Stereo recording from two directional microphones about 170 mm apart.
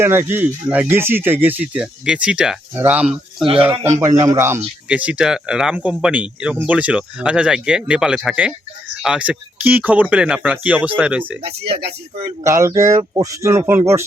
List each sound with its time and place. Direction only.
0.0 s speech: 15° right (ahead or behind)
3.4 s speech: 35° right (ahead or behind)
4.2 s speech: 20° right (ahead or behind)
12.4 s speech: 15° right (ahead or behind)